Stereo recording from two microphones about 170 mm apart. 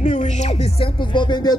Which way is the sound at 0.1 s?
40° left (ahead or behind).